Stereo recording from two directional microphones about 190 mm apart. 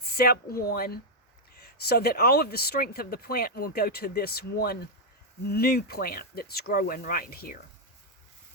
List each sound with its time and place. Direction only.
0.1 s speech: 55° left (ahead or behind)